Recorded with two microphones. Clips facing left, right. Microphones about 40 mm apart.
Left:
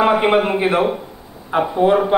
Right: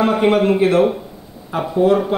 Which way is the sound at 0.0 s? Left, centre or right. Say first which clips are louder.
Even; centre.